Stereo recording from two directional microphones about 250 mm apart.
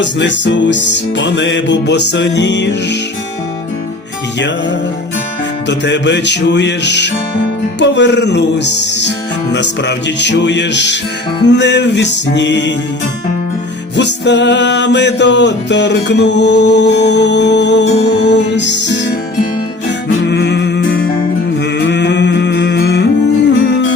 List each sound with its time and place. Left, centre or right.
0.0 s music: left
5.6 s music: left
13.9 s music: left
20.3 s music: left
21.8 s humming: left